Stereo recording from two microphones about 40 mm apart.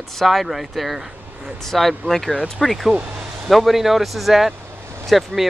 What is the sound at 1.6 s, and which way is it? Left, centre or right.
Speech, centre.